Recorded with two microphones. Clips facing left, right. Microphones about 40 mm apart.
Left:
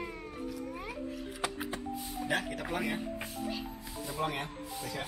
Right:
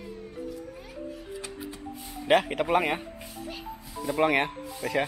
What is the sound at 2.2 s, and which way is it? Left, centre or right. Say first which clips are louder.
Speech: right 12 dB; right.